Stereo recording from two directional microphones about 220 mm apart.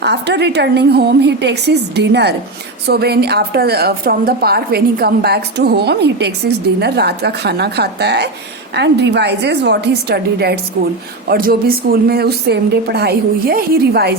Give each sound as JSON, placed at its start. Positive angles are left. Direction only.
{"t": 0.0, "sound": "a woman's voice", "side_deg": -50}